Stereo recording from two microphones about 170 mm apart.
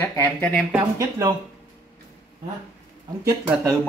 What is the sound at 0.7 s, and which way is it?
Speech, 15° right (ahead or behind).